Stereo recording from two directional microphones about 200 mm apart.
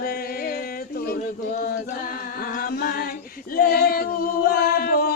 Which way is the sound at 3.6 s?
50° left (ahead or behind).